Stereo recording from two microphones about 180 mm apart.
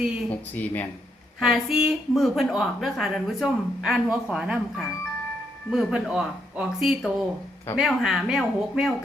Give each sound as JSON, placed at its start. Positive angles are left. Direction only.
{"t": 0.3, "sound": "speech", "side_deg": 10}
{"t": 1.4, "sound": "a woman's voice", "side_deg": 0}